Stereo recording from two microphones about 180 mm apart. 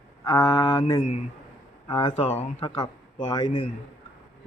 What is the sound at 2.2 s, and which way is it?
Speech, 40° left (ahead or behind).